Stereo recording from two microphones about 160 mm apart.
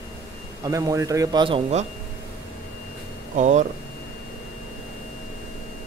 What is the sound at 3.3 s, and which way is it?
Speech, 45° right (ahead or behind).